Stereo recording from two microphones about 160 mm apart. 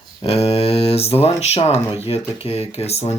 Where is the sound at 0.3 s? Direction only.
40° left (ahead or behind).